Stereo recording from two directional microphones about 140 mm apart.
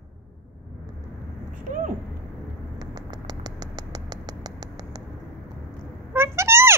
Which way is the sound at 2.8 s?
30° right (ahead or behind).